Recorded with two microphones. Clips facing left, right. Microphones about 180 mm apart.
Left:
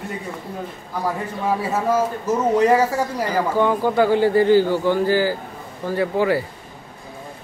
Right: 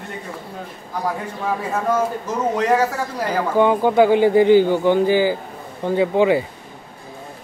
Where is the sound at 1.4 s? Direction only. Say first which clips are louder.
Left 1 dB; 5° left (ahead or behind).